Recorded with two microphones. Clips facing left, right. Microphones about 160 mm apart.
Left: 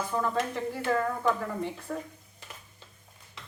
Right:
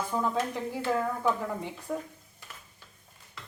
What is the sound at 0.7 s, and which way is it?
A woman's voice, 15° right (ahead or behind).